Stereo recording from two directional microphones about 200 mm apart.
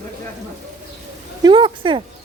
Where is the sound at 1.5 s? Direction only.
25° right (ahead or behind).